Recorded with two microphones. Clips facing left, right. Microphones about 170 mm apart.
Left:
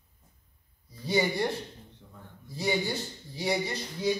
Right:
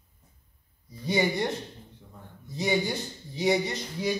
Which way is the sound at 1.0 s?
20° right (ahead or behind).